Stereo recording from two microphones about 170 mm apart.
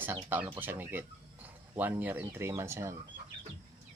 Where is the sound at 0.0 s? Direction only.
10° right (ahead or behind).